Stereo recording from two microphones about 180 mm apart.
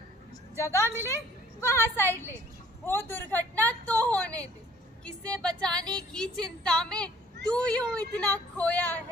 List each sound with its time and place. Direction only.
0.6 s a woman's voice: 15° left (ahead or behind)